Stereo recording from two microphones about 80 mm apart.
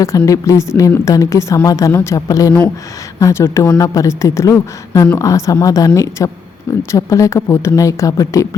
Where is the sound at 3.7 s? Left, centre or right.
Left.